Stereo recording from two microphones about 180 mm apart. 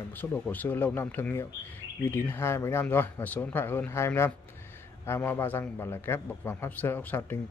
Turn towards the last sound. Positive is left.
turn(degrees=10)  # may be behind; listen again after turning